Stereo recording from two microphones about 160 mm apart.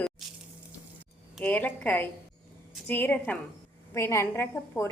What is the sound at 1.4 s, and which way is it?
A woman's voice, 10° left (ahead or behind).